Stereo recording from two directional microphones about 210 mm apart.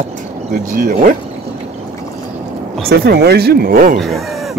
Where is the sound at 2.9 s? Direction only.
50° right (ahead or behind).